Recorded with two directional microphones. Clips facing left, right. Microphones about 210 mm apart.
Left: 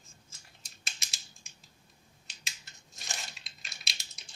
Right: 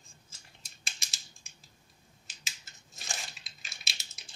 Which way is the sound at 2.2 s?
Centre (ahead or behind).